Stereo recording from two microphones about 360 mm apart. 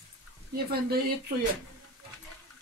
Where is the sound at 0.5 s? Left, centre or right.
Right.